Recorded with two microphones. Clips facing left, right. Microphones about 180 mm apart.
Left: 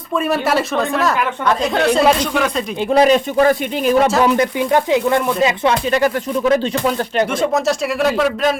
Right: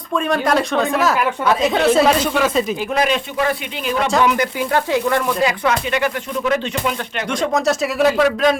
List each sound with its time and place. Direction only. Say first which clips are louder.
0.3 s speech: right 1 dB; 5° left (ahead or behind)
2.9 s speech: left 9 dB; 35° left (ahead or behind)
4.3 s speech: left 3 dB; 20° left (ahead or behind)
5.9 s speech: left 4 dB; 40° left (ahead or behind)
7.5 s speech: even; centre (ahead or behind)